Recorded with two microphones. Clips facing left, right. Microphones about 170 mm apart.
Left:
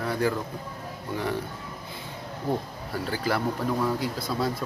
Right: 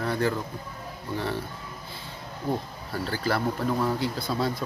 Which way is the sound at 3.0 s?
15° left (ahead or behind).